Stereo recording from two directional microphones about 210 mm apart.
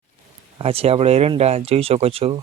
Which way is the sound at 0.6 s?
30° right (ahead or behind).